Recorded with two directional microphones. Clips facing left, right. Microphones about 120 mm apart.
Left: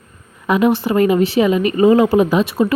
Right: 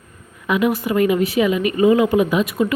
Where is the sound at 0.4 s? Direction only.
35° left (ahead or behind).